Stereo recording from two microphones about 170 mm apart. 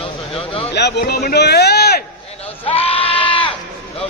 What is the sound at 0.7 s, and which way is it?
A man's voice, 80° left.